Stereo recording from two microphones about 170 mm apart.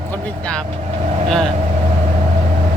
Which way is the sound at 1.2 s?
Centre (ahead or behind).